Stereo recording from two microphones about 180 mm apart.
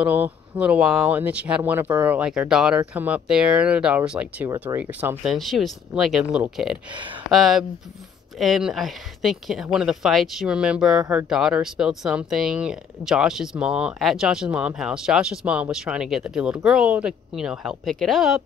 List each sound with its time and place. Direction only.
0.0 s a woman's voice: 10° right (ahead or behind)
6.9 s speech: 25° right (ahead or behind)
7.2 s a woman's voice: centre (ahead or behind)